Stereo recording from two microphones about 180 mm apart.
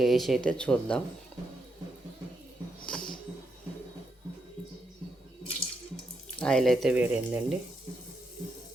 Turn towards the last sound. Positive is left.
turn(degrees=-10)  # may be behind; listen again after turning